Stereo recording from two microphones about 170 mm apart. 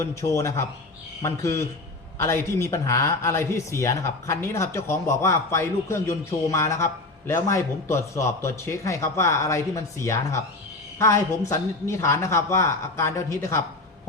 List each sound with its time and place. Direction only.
0.0 s speech: 15° left (ahead or behind)